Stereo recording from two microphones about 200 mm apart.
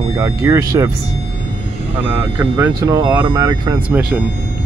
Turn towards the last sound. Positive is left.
turn(degrees=-5)  # may be behind; listen again after turning